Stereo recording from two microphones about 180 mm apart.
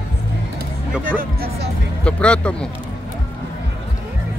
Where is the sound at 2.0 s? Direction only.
5° left (ahead or behind).